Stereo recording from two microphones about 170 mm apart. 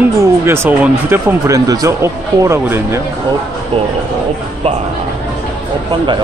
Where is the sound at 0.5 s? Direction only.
15° right (ahead or behind).